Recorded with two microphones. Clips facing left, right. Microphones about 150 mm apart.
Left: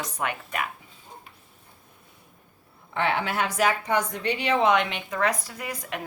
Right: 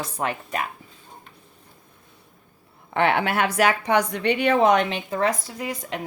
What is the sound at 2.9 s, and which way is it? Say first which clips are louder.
A woman's voice: right 5 dB; 65° right (ahead or behind).